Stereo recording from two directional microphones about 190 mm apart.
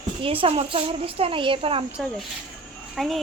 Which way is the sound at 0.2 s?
30° right (ahead or behind).